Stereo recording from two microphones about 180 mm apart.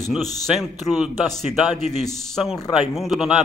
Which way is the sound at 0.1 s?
Centre (ahead or behind).